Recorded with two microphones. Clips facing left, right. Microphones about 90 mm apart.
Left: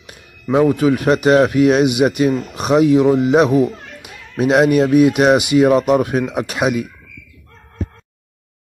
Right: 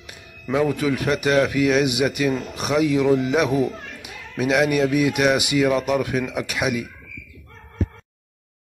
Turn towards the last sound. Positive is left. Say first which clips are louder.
# left 6 dB
turn(degrees=30)  # may be behind; listen again after turning